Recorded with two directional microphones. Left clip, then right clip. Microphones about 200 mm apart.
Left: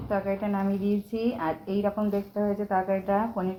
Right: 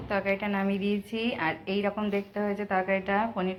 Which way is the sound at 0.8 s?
5° right (ahead or behind).